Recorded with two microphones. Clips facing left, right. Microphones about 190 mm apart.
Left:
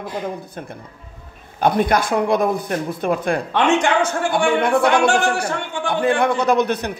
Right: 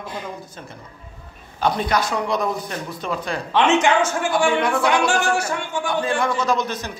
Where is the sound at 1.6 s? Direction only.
55° left (ahead or behind).